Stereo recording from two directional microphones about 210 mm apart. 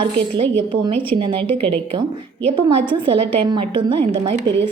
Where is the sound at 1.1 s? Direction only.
25° right (ahead or behind).